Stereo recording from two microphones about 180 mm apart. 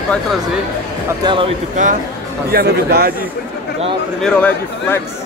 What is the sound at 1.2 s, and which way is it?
Speech, 30° right (ahead or behind).